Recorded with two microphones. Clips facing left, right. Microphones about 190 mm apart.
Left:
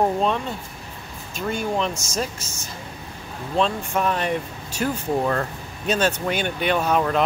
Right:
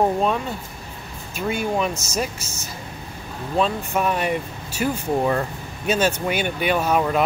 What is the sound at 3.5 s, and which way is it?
Speech, 5° right (ahead or behind).